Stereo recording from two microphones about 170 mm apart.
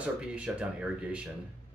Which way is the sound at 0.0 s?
5° right (ahead or behind).